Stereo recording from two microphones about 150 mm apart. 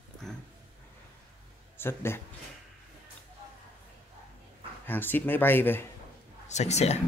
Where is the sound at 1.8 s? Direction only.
15° left (ahead or behind).